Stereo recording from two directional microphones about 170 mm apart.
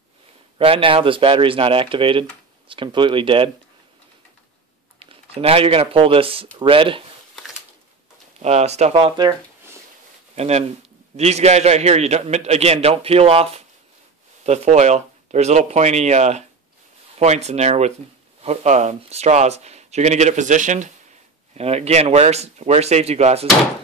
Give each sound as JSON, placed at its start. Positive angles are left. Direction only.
{"t": 0.6, "sound": "speech", "side_deg": -35}
{"t": 4.9, "sound": "speech", "side_deg": -35}
{"t": 8.4, "sound": "speech", "side_deg": -40}
{"t": 10.3, "sound": "speech", "side_deg": -40}